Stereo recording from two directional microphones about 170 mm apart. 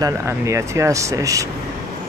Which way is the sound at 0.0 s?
15° right (ahead or behind).